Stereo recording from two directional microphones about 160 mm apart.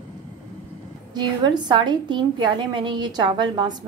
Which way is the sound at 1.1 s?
25° right (ahead or behind).